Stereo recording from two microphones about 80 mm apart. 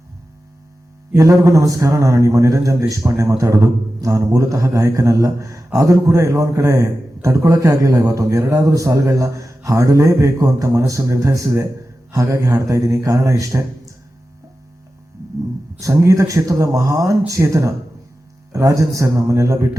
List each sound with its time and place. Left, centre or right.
1.1 s a man's voice: right
15.8 s a man's voice: right